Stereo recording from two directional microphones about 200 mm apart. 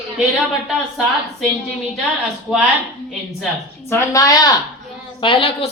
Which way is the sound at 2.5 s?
5° right (ahead or behind).